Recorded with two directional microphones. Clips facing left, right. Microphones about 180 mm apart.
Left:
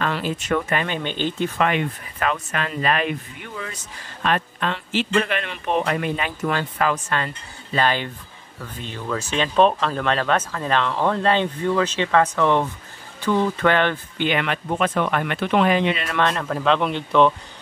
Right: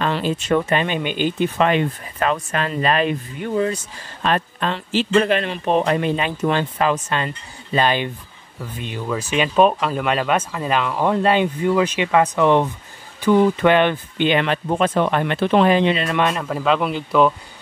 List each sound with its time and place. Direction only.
0.0 s speech: 25° right (ahead or behind)
1.6 s speech: 30° right (ahead or behind)
16.2 s a man's voice: 10° right (ahead or behind)